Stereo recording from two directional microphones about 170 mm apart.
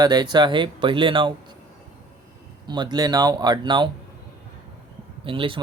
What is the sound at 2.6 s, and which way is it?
Speech, 25° right (ahead or behind).